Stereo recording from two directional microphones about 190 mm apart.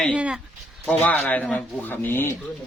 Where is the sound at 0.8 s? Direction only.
5° left (ahead or behind).